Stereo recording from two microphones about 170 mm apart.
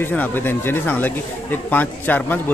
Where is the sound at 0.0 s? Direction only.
10° left (ahead or behind).